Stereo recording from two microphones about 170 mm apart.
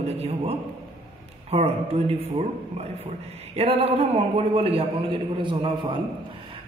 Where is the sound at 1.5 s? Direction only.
35° right (ahead or behind).